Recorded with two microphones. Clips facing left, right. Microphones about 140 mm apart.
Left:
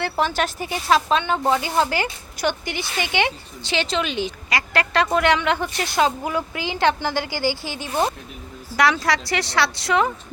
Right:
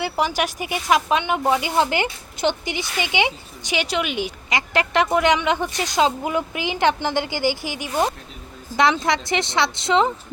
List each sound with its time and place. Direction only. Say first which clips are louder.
0.0 s a woman's voice: even; 10° right (ahead or behind)